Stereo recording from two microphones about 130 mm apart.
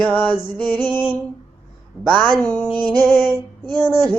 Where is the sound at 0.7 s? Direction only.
35° right (ahead or behind).